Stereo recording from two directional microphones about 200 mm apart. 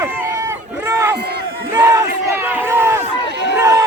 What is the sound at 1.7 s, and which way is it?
Battle cry, 15° right (ahead or behind).